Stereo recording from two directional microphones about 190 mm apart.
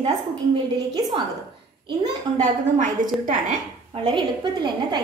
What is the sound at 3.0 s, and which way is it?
Speech, 45° right (ahead or behind).